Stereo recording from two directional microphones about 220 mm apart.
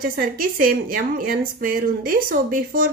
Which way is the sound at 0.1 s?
40° right (ahead or behind).